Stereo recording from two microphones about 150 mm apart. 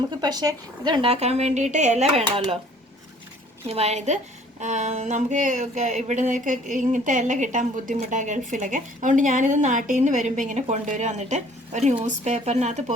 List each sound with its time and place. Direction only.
0.1 s speech: 25° right (ahead or behind)
1.0 s speech: 45° right (ahead or behind)
3.7 s speech: 45° right (ahead or behind)
4.6 s a sound: 50° right (ahead or behind)
12.0 s speech: 50° right (ahead or behind)